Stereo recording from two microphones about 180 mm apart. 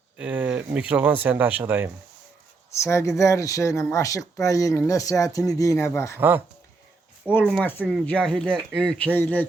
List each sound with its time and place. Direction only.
0.2 s speech: 10° right (ahead or behind)
2.7 s speech: 15° left (ahead or behind)
6.1 s speech: 10° right (ahead or behind)
7.3 s speech: 5° left (ahead or behind)